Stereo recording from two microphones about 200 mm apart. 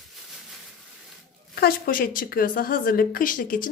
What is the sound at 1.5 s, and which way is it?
A woman's voice, 50° left (ahead or behind).